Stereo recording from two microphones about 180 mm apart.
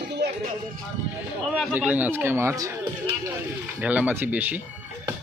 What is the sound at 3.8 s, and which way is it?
Speech, 10° right (ahead or behind).